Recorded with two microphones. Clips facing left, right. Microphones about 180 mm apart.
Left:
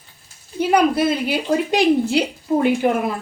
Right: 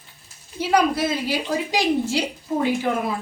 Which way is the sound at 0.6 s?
60° left (ahead or behind).